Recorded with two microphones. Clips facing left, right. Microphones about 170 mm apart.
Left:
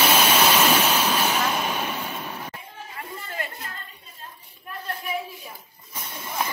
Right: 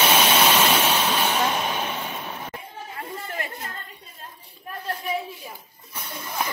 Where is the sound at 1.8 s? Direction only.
10° right (ahead or behind).